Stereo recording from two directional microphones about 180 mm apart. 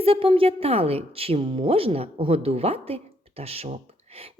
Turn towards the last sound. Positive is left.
turn(degrees=-35)  # may be behind; listen again after turning